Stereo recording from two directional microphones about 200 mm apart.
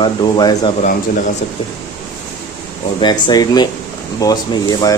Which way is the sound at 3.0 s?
20° left (ahead or behind).